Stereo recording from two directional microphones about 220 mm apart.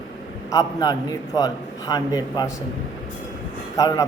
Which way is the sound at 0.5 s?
15° left (ahead or behind).